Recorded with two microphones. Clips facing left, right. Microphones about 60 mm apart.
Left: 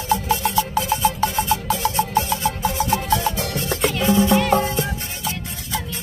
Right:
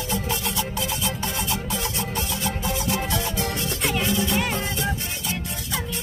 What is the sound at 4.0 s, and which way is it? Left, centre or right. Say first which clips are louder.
Music: left 9 dB; left.